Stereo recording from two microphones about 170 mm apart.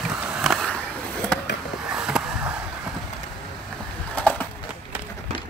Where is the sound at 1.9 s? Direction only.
5° right (ahead or behind).